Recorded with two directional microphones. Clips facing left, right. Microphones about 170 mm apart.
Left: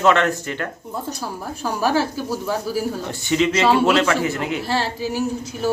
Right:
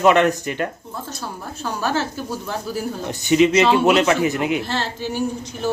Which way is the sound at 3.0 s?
15° right (ahead or behind).